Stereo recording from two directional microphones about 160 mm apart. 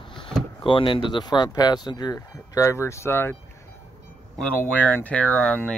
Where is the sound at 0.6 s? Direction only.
30° left (ahead or behind); by 3.4 s 15° left (ahead or behind).